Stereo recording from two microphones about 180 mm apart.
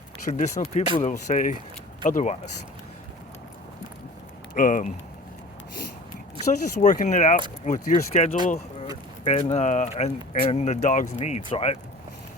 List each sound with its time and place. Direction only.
0.3 s speech: 45° left (ahead or behind)
4.5 s speech: 50° left (ahead or behind)
6.7 s speech: 45° left (ahead or behind)
8.4 s a sound: 35° left (ahead or behind)
9.2 s speech: 35° left (ahead or behind)